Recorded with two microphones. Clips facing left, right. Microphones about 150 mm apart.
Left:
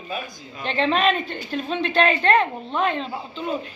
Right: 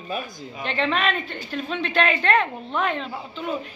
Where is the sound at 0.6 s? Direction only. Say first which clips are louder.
Left 3 dB; 35° left (ahead or behind).